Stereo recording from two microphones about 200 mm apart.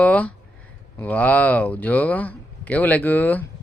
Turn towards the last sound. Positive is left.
turn(degrees=10)  # may be behind; listen again after turning